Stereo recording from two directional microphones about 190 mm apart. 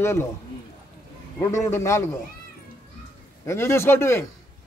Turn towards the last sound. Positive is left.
turn(degrees=15)  # may be behind; listen again after turning